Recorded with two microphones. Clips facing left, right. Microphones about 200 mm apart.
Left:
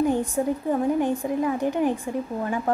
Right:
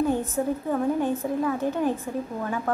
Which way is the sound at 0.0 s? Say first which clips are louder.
Left 2 dB; 15° left (ahead or behind).